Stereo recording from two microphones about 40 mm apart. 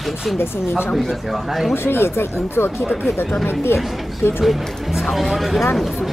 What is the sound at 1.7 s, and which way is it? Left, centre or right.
Speech, left.